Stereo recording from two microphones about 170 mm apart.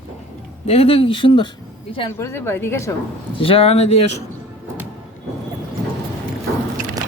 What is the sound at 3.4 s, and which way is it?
Speech, 35° left (ahead or behind).